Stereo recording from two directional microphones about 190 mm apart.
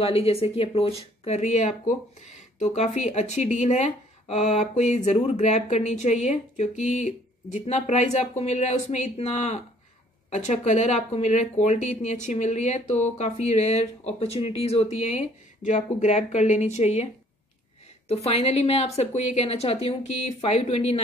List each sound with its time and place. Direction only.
0.0 s speech: 30° left (ahead or behind)